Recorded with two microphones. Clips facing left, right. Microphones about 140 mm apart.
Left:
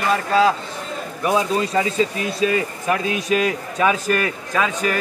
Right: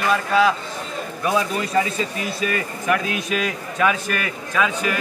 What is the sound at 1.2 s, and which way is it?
A man's voice, 20° left (ahead or behind).